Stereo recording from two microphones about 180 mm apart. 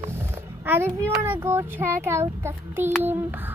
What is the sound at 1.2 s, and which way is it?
Child singing, 15° right (ahead or behind).